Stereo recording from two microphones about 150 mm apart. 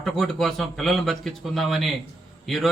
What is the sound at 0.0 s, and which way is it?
A man's voice, centre (ahead or behind).